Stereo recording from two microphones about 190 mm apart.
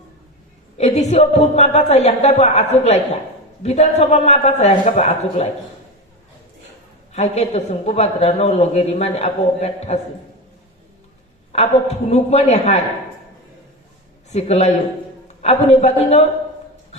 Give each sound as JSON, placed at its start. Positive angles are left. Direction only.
{"t": 0.8, "sound": "speech", "side_deg": 35}
{"t": 7.1, "sound": "speech", "side_deg": 35}
{"t": 11.5, "sound": "speech", "side_deg": 35}
{"t": 14.3, "sound": "speech", "side_deg": 35}